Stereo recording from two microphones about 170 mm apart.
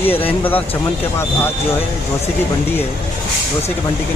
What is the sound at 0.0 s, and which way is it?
Speech, 35° left (ahead or behind).